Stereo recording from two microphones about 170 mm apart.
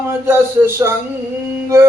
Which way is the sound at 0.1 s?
15° right (ahead or behind).